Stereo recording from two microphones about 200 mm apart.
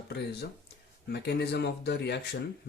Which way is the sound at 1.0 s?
55° left (ahead or behind).